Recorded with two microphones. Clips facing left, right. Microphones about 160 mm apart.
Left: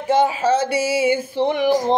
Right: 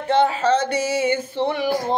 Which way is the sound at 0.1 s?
10° left (ahead or behind).